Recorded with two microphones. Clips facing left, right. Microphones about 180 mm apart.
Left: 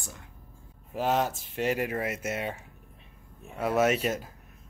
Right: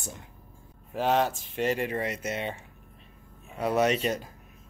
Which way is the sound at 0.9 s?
Centre (ahead or behind).